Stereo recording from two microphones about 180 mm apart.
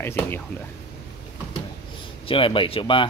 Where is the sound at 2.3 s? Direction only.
30° left (ahead or behind).